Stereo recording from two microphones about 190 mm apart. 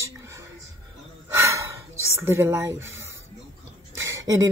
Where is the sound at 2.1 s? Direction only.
10° right (ahead or behind).